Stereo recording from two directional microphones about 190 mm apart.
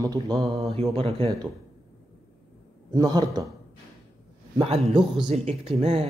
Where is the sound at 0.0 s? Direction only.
20° right (ahead or behind).